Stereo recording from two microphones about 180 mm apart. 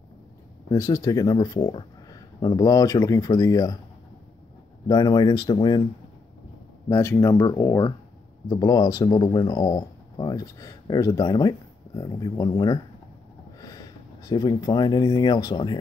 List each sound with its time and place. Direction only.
0.7 s speech: 20° left (ahead or behind)
4.8 s speech: 20° left (ahead or behind)
6.9 s speech: 15° left (ahead or behind)